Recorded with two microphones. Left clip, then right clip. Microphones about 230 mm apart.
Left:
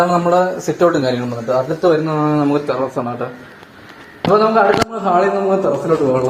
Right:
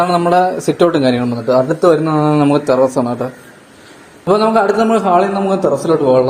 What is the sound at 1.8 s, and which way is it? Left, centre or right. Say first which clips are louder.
A man's voice: right 3 dB; right.